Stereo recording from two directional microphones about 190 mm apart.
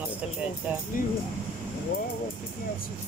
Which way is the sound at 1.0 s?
45° left (ahead or behind).